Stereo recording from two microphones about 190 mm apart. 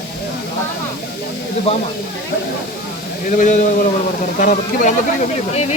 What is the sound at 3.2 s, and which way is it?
Speech, 40° left (ahead or behind).